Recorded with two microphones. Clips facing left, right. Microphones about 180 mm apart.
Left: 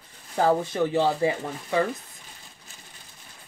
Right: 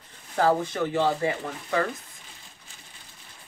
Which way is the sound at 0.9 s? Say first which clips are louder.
Left 1 dB; 15° left (ahead or behind).